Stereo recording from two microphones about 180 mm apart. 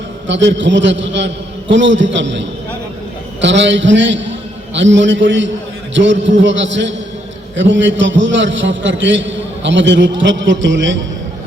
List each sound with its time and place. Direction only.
0.3 s a man's voice: 90° right